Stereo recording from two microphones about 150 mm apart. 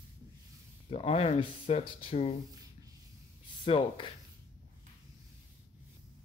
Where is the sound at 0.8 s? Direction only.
45° left (ahead or behind).